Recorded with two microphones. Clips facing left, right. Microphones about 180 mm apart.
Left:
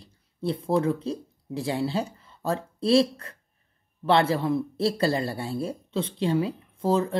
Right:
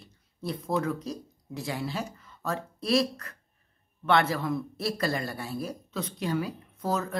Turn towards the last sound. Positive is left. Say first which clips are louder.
# left 6 dB
turn(degrees=30)  # may be behind; listen again after turning